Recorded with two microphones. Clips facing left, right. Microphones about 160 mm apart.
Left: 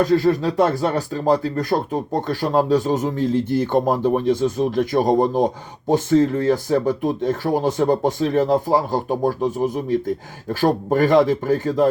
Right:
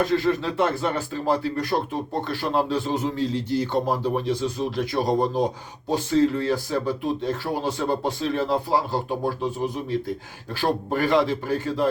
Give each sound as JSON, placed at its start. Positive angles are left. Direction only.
{"t": 0.0, "sound": "speech", "side_deg": 40}